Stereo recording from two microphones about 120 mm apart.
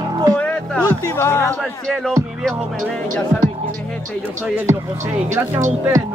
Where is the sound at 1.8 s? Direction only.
Centre (ahead or behind).